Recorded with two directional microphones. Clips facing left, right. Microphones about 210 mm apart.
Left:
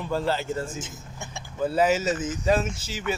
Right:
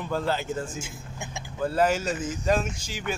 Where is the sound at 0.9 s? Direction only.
15° right (ahead or behind).